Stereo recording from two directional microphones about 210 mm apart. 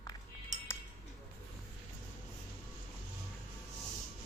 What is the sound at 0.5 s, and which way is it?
Cutlery, 35° right (ahead or behind).